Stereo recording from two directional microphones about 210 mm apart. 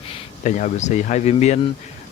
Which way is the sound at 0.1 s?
35° left (ahead or behind).